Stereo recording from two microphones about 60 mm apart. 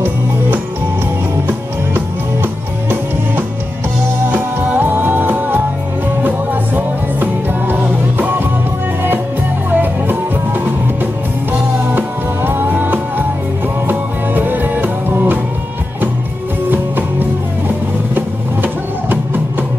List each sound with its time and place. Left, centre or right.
2.0 s music: right
9.7 s music: right
12.4 s music: right
16.7 s music: right